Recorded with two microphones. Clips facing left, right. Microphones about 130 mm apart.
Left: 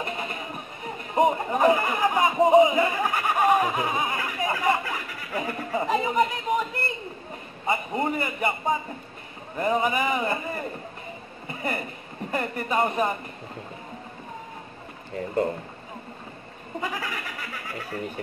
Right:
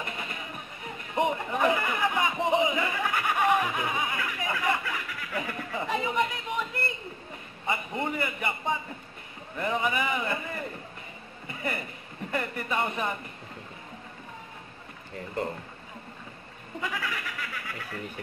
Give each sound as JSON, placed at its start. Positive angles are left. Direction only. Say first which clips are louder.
{"t": 0.0, "sound": "music", "louder": "left 5 dB", "side_deg": 35}
{"t": 1.1, "sound": "speech", "louder": "left 5 dB", "side_deg": 40}
{"t": 7.6, "sound": "a man's voice", "louder": "left 5 dB", "side_deg": 35}
{"t": 11.4, "sound": "a sound", "louder": "left 3 dB", "side_deg": 35}
{"t": 12.3, "sound": "a man's voice", "louder": "left 4 dB", "side_deg": 40}
{"t": 16.8, "sound": "speech", "louder": "left 1 dB", "side_deg": 35}